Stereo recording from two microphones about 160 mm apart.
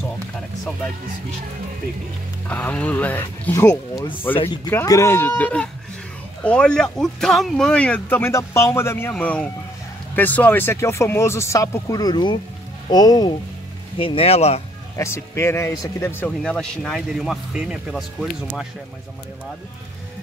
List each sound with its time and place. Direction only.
2.5 s speech: 10° left (ahead or behind); by 13.3 s 25° left (ahead or behind)
13.9 s speech: 35° left (ahead or behind)
15.0 s speech: 15° left (ahead or behind); by 18.7 s centre (ahead or behind)